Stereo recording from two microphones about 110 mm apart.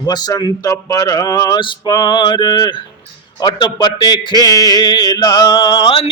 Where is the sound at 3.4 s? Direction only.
45° left (ahead or behind).